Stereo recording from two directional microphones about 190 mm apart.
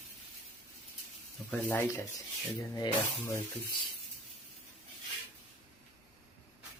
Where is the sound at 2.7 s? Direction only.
20° left (ahead or behind).